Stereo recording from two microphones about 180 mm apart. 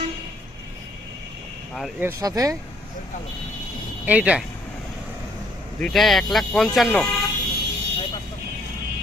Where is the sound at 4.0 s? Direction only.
10° right (ahead or behind).